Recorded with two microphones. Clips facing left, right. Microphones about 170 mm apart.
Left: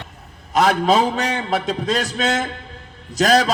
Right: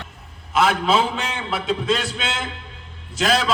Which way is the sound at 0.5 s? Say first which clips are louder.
Left 3 dB; 40° left (ahead or behind).